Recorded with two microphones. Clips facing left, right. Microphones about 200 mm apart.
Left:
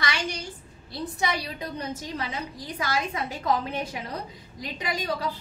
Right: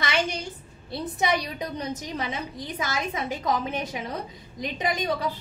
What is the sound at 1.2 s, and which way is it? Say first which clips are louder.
A woman's voice: right 4 dB; 20° right (ahead or behind).